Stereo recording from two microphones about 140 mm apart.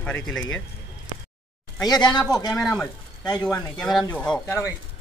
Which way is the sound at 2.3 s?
25° left (ahead or behind).